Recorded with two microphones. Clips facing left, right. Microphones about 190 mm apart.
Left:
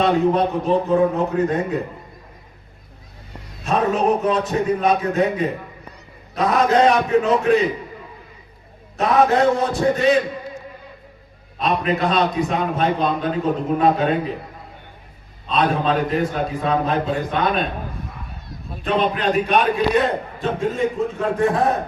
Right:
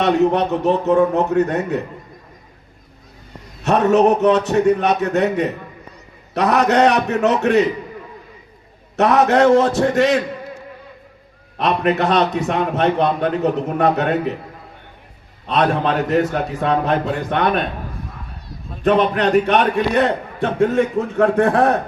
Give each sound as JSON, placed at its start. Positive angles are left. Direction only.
{"t": 0.0, "sound": "a man's voice", "side_deg": -75}
{"t": 3.6, "sound": "a man's voice", "side_deg": -75}
{"t": 9.0, "sound": "a man's voice", "side_deg": -75}
{"t": 11.5, "sound": "a man's voice", "side_deg": -70}
{"t": 15.4, "sound": "a man's voice", "side_deg": -75}
{"t": 18.9, "sound": "a man's voice", "side_deg": -80}